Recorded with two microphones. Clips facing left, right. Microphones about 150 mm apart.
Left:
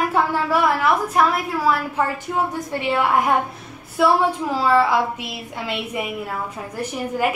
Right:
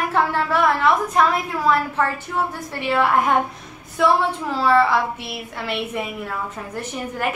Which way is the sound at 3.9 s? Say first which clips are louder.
Left 1 dB; 10° left (ahead or behind).